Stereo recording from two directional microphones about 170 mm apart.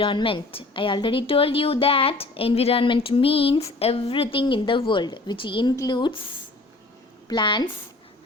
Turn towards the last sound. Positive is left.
turn(degrees=30)  # may be behind; listen again after turning